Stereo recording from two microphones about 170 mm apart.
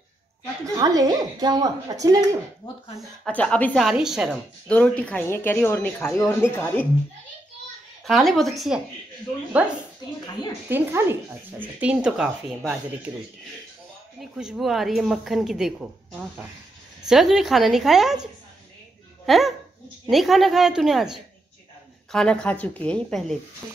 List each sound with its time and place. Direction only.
0.7 s a woman's voice: 20° right (ahead or behind)
3.3 s a woman's voice: 10° left (ahead or behind)
4.6 s speech: 10° left (ahead or behind)
8.0 s a woman's voice: centre (ahead or behind)
14.4 s a woman's voice: centre (ahead or behind)